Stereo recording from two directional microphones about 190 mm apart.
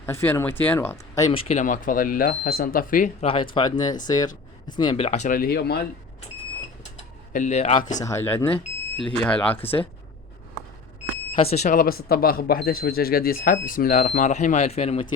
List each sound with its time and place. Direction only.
0.0 s speech: 10° left (ahead or behind)
1.3 s speech: 35° left (ahead or behind)
3.2 s speech: 25° left (ahead or behind); by 5.8 s 55° left (ahead or behind)
7.3 s speech: 40° left (ahead or behind)
7.9 s speech: 15° left (ahead or behind)
11.3 s speech: 35° left (ahead or behind)